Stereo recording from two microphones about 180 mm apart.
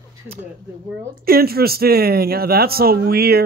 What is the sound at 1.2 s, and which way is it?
Speech, 55° right (ahead or behind).